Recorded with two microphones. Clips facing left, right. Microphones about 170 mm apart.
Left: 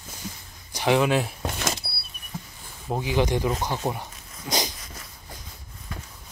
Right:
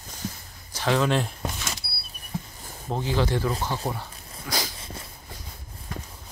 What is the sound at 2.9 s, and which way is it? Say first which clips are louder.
Speech: left 2 dB; 10° left (ahead or behind).